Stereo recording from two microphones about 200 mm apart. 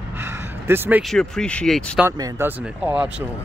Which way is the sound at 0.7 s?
10° right (ahead or behind).